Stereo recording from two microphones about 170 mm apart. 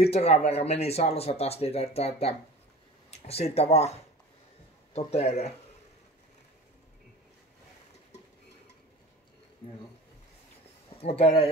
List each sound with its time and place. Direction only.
0.0 s speech: 40° left (ahead or behind)
11.0 s speech: 35° left (ahead or behind)